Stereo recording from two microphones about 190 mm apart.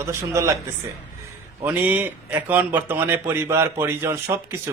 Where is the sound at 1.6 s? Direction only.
10° right (ahead or behind).